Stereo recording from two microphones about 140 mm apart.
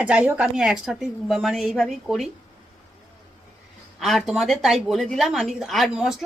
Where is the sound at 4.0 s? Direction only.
Centre (ahead or behind).